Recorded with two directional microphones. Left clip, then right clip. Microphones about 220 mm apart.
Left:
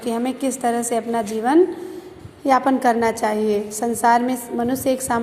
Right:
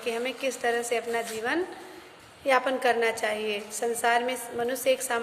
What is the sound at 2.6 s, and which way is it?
A woman's voice, 15° left (ahead or behind).